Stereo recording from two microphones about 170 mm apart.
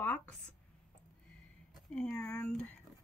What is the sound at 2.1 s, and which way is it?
Speech, 15° left (ahead or behind).